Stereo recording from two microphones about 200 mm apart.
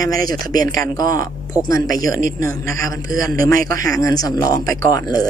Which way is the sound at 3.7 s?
15° left (ahead or behind).